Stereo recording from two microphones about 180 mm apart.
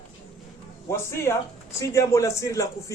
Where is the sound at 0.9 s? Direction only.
15° left (ahead or behind).